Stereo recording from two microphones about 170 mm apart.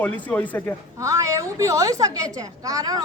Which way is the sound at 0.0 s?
10° left (ahead or behind).